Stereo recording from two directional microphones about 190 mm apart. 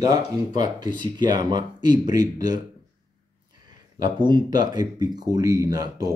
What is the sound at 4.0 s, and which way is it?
Speech, 25° right (ahead or behind).